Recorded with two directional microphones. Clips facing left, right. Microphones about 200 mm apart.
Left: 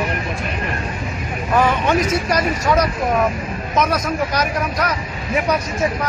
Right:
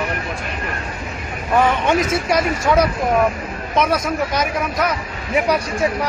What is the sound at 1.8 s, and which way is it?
Speech, 25° right (ahead or behind).